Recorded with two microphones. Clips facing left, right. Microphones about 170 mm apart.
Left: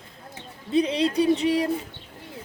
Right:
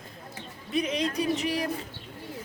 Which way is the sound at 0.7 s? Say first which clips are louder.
Left 6 dB; 30° left (ahead or behind).